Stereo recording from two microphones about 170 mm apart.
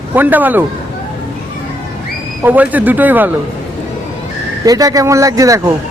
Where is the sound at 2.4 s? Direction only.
10° right (ahead or behind).